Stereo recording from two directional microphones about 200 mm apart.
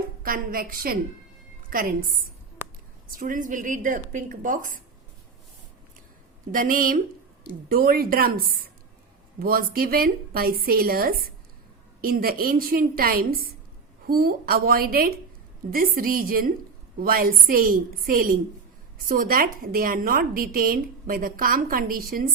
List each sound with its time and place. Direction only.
0.2 s a woman's voice: 45° right (ahead or behind)
3.1 s a woman's voice: 45° right (ahead or behind)
6.5 s a woman's voice: 45° right (ahead or behind)